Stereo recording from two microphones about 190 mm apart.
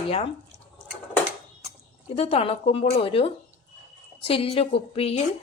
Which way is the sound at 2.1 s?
30° left (ahead or behind).